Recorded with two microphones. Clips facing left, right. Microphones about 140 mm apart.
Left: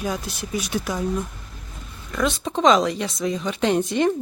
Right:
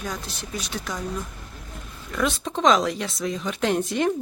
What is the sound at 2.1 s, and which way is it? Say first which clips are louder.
Speech: left 2 dB; centre (ahead or behind).